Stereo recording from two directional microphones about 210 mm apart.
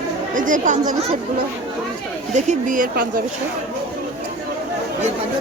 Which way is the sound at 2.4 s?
35° right (ahead or behind).